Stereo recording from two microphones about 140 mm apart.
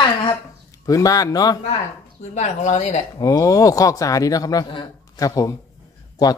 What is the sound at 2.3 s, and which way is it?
Speech, 55° left (ahead or behind).